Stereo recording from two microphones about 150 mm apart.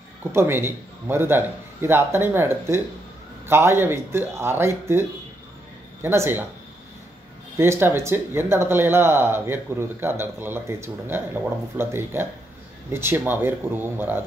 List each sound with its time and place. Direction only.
0.3 s speech: 15° right (ahead or behind)
6.0 s speech: 15° right (ahead or behind)
7.5 s speech: 15° right (ahead or behind)